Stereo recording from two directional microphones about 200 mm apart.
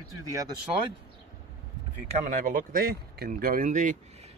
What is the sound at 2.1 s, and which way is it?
Speech, 40° right (ahead or behind).